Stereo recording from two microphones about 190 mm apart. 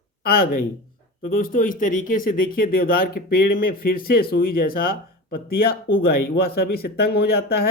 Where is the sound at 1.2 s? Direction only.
45° left (ahead or behind).